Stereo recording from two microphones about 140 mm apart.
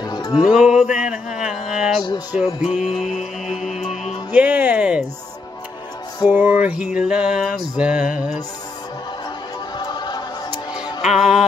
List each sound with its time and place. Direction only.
0.0 s music: 25° left (ahead or behind)
0.5 s music: 5° right (ahead or behind)
3.2 s music: 55° left (ahead or behind)
4.3 s music: 10° right (ahead or behind)
6.2 s music: 10° right (ahead or behind)
9.8 s music: 30° left (ahead or behind)
11.1 s music: 5° right (ahead or behind)